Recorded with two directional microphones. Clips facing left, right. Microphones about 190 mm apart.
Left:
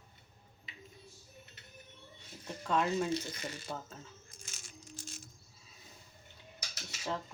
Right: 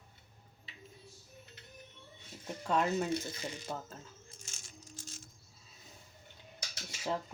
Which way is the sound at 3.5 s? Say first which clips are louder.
Right 1 dB; 15° right (ahead or behind).